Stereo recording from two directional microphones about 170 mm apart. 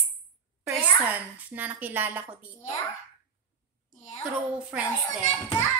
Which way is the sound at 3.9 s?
45° left (ahead or behind).